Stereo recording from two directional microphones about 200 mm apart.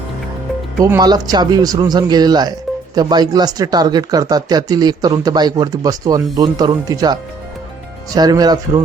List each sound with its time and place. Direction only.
0.8 s speech: 15° right (ahead or behind)